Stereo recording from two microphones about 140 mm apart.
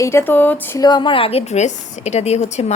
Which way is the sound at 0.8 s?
35° left (ahead or behind).